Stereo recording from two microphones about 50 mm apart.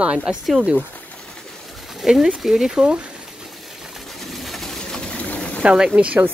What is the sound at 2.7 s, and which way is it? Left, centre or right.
Speech, centre.